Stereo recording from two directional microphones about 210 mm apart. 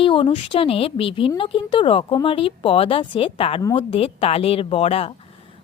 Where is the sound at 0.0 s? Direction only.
25° left (ahead or behind).